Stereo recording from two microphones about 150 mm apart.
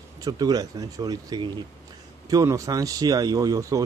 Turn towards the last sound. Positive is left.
turn(degrees=-25)  # may be behind; listen again after turning